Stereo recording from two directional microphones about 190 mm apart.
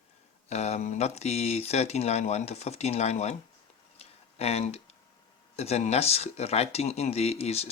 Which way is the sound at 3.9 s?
35° left (ahead or behind).